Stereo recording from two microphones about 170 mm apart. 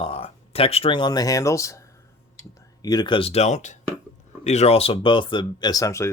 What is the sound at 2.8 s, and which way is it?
Speech, 25° left (ahead or behind).